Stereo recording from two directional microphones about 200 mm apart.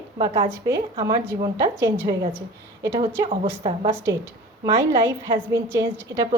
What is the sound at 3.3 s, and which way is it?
Speech, 30° right (ahead or behind).